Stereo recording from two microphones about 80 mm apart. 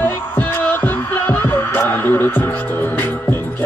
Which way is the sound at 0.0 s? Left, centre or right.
Left.